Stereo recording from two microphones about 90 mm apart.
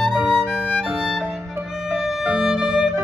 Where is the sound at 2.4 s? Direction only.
5° right (ahead or behind).